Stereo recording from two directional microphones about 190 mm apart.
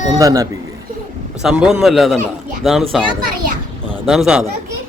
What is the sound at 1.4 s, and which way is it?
Speech, 5° right (ahead or behind).